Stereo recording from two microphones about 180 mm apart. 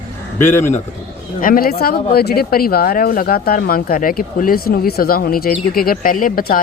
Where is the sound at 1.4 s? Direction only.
50° left (ahead or behind).